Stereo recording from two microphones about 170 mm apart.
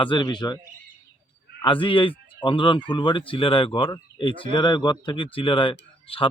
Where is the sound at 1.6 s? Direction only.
30° left (ahead or behind).